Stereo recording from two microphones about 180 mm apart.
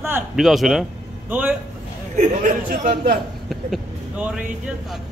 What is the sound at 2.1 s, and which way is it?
A man's voice, 45° right (ahead or behind).